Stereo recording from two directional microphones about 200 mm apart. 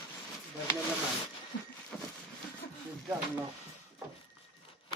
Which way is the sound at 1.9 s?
5° left (ahead or behind).